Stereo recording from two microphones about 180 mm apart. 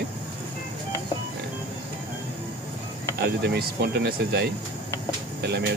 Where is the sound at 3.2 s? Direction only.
60° right (ahead or behind).